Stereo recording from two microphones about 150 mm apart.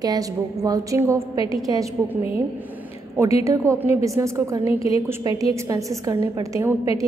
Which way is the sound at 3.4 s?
20° right (ahead or behind).